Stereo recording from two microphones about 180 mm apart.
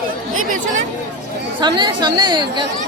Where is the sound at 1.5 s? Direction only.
25° right (ahead or behind).